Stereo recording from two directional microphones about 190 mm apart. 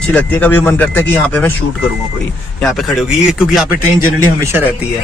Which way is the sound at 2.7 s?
Centre (ahead or behind).